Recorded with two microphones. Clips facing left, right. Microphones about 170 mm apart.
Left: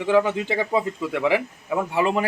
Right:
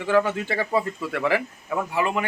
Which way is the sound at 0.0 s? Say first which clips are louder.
Left 2 dB; 15° left (ahead or behind).